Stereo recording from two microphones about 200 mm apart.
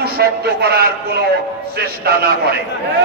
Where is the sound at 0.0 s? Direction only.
50° right (ahead or behind).